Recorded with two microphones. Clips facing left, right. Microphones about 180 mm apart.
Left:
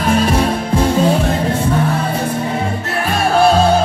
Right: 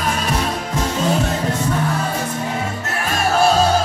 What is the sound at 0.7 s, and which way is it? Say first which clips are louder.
Music: left 8 dB; 30° left (ahead or behind).